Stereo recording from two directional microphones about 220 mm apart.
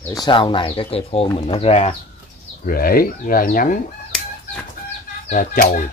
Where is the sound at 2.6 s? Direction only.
40° left (ahead or behind).